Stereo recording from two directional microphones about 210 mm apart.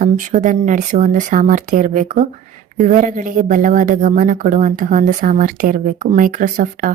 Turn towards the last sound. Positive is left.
turn(degrees=-40)  # may be behind; listen again after turning